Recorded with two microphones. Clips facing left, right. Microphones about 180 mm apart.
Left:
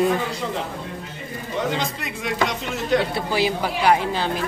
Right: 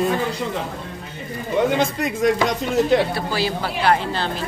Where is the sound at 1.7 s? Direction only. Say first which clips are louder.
Right 6 dB; 50° right (ahead or behind).